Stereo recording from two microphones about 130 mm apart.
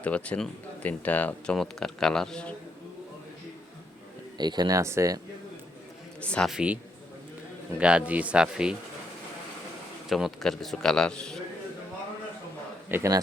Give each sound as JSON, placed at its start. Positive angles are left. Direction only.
{"t": 0.0, "sound": "speech", "side_deg": 10}
{"t": 4.4, "sound": "speech", "side_deg": -35}
{"t": 6.1, "sound": "a man's voice", "side_deg": 10}
{"t": 6.5, "sound": "speech", "side_deg": -10}
{"t": 7.8, "sound": "speech", "side_deg": -10}
{"t": 10.1, "sound": "a man's voice", "side_deg": 0}
{"t": 12.9, "sound": "speech", "side_deg": -20}